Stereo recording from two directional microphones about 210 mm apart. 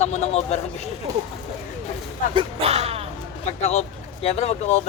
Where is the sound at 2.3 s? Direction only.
30° right (ahead or behind).